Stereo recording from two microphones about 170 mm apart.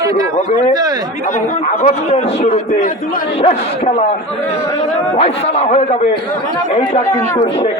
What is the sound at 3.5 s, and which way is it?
Speech, 35° left (ahead or behind).